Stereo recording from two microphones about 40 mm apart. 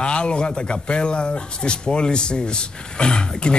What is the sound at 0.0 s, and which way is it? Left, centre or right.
Speech, left.